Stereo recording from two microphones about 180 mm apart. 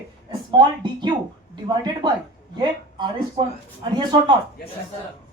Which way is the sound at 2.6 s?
25° right (ahead or behind).